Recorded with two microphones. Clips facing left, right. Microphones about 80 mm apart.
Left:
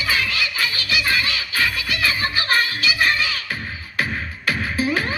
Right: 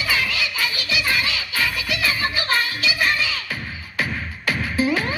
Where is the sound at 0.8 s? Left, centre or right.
Right.